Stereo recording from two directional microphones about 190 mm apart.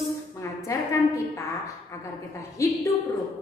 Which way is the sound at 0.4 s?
15° left (ahead or behind).